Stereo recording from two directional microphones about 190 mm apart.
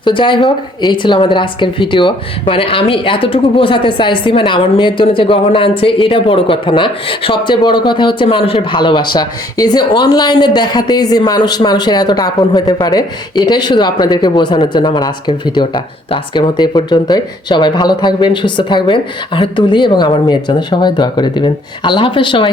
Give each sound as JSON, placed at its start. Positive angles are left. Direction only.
{"t": 0.0, "sound": "speech", "side_deg": 25}